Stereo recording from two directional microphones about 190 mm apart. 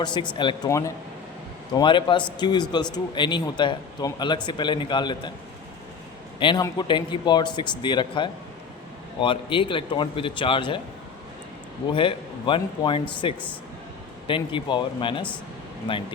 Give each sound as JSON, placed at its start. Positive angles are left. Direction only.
{"t": 0.0, "sound": "a man's voice", "side_deg": 25}
{"t": 6.4, "sound": "a man's voice", "side_deg": 25}
{"t": 11.9, "sound": "a man's voice", "side_deg": 25}